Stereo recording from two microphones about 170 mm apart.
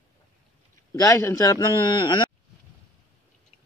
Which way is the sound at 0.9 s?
20° left (ahead or behind).